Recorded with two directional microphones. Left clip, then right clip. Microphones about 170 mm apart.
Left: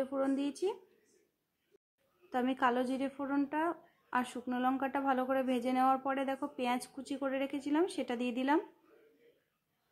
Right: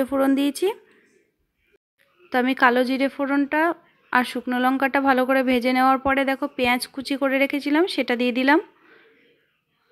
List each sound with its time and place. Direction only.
0.0 s speech: 35° right (ahead or behind)
2.2 s a woman's voice: 20° right (ahead or behind)